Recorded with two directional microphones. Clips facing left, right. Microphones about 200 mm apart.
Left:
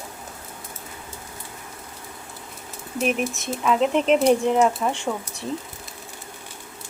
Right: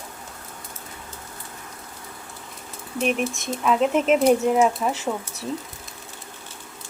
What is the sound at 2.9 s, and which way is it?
Speech, centre (ahead or behind).